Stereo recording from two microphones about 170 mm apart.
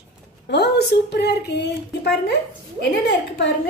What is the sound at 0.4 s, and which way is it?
Speech, 75° left (ahead or behind).